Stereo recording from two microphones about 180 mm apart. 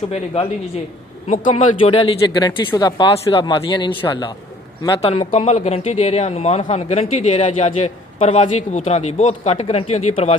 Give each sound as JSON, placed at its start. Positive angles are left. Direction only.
{"t": 0.1, "sound": "speech", "side_deg": 35}
{"t": 1.2, "sound": "speech", "side_deg": 45}
{"t": 1.8, "sound": "speech", "side_deg": 30}